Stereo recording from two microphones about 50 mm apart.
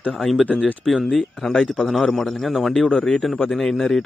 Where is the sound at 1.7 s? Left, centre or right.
Centre.